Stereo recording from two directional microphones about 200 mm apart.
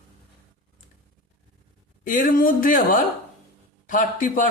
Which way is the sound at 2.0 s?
45° left (ahead or behind).